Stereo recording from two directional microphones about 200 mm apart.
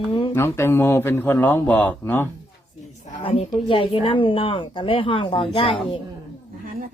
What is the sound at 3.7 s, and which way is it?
A woman's voice, 25° left (ahead or behind).